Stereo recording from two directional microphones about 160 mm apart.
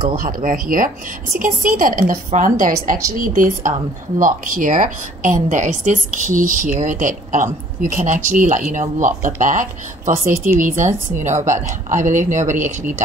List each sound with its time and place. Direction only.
0.1 s a woman's voice: 60° right (ahead or behind)